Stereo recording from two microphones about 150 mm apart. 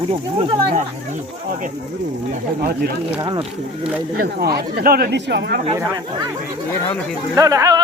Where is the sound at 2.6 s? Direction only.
80° right.